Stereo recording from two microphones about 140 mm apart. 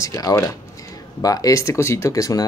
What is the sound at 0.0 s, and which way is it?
Speech, 25° left (ahead or behind).